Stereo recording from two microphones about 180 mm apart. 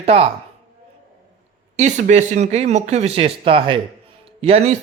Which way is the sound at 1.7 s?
40° right (ahead or behind).